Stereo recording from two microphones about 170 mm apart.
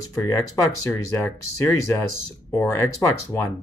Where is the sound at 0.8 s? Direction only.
15° left (ahead or behind).